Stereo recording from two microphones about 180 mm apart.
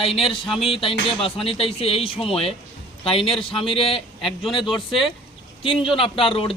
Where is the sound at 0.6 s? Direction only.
30° left (ahead or behind).